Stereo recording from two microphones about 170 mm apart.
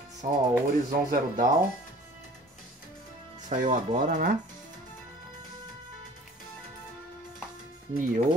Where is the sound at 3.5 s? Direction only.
50° right (ahead or behind).